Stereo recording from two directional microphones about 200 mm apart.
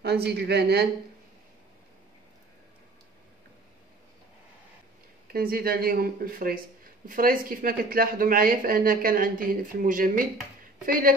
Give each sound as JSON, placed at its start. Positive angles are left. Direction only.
{"t": 0.0, "sound": "speech", "side_deg": -55}
{"t": 5.3, "sound": "speech", "side_deg": -50}